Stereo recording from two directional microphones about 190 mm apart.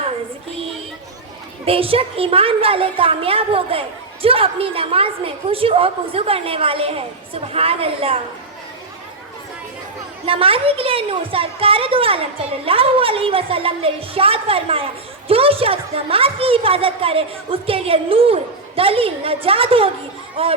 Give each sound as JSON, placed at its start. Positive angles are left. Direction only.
{"t": 1.6, "sound": "a woman's voice", "side_deg": -30}
{"t": 10.2, "sound": "a woman's voice", "side_deg": -30}